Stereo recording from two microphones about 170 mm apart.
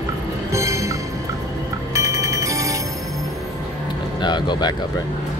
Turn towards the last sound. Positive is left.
turn(degrees=25)  # may be behind; listen again after turning